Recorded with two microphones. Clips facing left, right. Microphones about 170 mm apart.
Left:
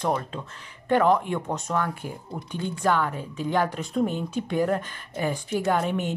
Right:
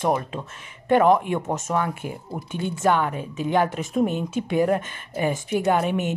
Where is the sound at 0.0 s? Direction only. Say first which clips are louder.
Right 3 dB; 20° right (ahead or behind).